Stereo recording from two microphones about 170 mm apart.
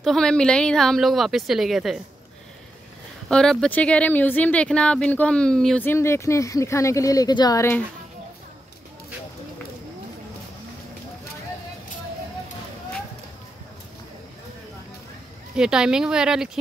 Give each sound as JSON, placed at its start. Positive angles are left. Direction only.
{"t": 0.0, "sound": "speech", "side_deg": 5}
{"t": 3.3, "sound": "speech", "side_deg": 5}
{"t": 5.9, "sound": "speech", "side_deg": 15}
{"t": 15.5, "sound": "speech", "side_deg": -5}